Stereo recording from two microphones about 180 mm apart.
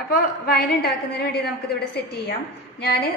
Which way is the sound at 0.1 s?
60° left (ahead or behind).